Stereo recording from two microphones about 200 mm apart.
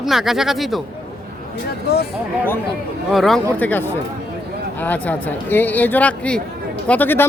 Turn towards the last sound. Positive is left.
turn(degrees=10)  # may be behind; listen again after turning